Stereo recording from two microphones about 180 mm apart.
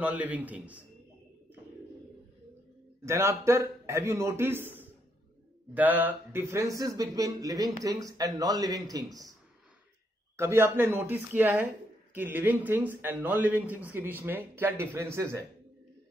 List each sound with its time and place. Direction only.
0.0 s speech: 10° right (ahead or behind)
3.1 s speech: 15° right (ahead or behind)
10.3 s speech: 15° right (ahead or behind)